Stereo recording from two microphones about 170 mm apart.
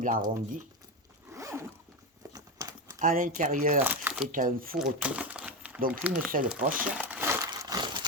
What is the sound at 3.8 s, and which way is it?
Crumpling, 10° right (ahead or behind).